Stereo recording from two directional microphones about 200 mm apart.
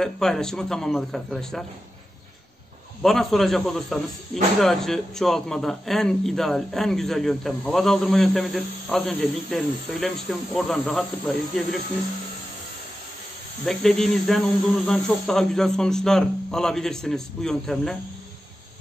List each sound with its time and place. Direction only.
0.0 s speech: 5° left (ahead or behind)
3.0 s speech: centre (ahead or behind)
13.7 s speech: centre (ahead or behind)